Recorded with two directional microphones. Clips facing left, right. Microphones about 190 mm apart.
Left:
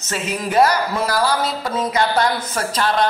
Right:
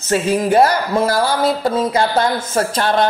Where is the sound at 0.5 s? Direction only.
30° right (ahead or behind).